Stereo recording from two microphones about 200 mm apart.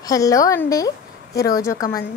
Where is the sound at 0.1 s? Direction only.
15° left (ahead or behind).